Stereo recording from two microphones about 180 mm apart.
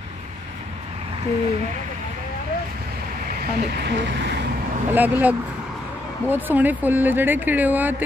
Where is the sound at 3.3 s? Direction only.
60° right (ahead or behind).